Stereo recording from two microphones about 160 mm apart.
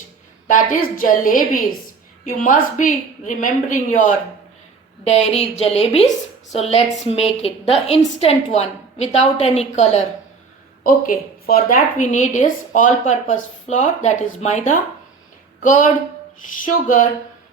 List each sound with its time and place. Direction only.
0.4 s a woman's voice: 55° left (ahead or behind)
5.0 s a woman's voice: 40° left (ahead or behind)
10.8 s a woman's voice: 60° left (ahead or behind)